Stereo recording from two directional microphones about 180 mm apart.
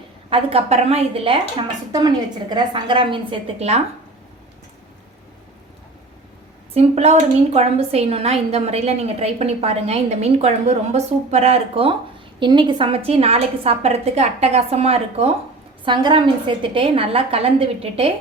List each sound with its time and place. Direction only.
0.3 s a woman's voice: 35° right (ahead or behind)
6.7 s a woman's voice: 35° right (ahead or behind)